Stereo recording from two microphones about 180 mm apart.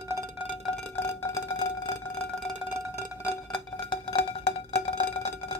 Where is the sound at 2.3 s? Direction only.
5° right (ahead or behind).